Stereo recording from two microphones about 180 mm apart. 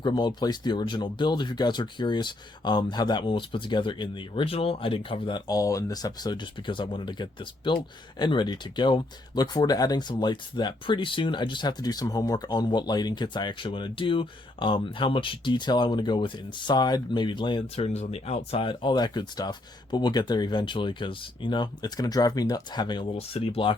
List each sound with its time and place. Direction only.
0.0 s speech: 25° left (ahead or behind)